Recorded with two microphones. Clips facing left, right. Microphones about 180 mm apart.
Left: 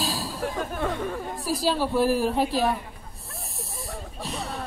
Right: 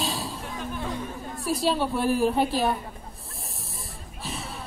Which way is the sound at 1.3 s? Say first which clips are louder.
Right 2 dB; centre (ahead or behind).